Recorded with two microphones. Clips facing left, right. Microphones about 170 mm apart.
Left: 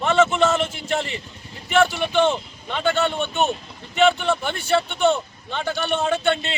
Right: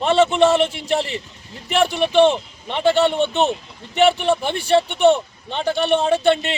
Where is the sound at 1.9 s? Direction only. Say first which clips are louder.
Right 5 dB; 25° right (ahead or behind).